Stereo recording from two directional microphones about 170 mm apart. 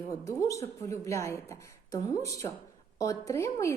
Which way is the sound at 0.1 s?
20° left (ahead or behind).